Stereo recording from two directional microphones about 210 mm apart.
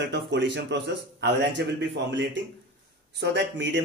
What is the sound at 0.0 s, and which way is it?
Speech, 55° right (ahead or behind).